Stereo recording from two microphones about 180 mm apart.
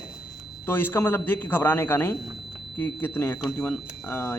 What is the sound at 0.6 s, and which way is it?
A man's voice, 10° left (ahead or behind).